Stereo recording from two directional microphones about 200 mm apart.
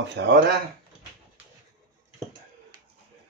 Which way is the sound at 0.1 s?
60° right (ahead or behind).